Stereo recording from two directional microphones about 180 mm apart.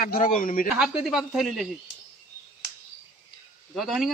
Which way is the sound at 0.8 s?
5° right (ahead or behind).